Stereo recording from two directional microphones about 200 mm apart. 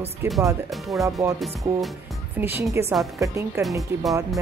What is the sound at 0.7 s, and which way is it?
Speech, centre (ahead or behind).